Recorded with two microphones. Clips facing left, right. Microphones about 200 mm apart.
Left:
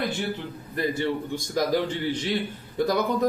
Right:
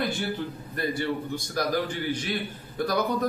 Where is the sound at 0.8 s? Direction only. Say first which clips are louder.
Left 2 dB; 20° left (ahead or behind).